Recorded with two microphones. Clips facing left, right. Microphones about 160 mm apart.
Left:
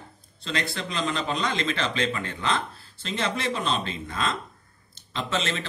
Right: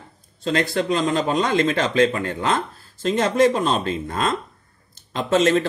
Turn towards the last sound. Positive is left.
turn(degrees=-45)  # may be behind; listen again after turning